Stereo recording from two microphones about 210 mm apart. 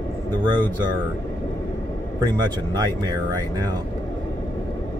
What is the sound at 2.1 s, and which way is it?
Speech, 20° right (ahead or behind).